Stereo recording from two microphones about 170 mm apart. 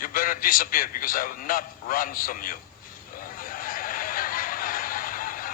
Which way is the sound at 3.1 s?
55° left (ahead or behind).